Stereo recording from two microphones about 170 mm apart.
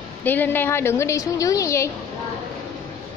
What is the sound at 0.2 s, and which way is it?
A woman's voice, 10° left (ahead or behind).